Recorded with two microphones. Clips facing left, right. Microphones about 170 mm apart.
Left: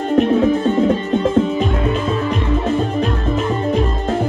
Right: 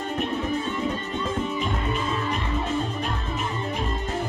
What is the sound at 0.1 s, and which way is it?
Music, 85° left.